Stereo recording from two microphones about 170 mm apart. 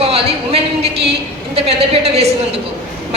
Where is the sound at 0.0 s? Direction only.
35° right (ahead or behind).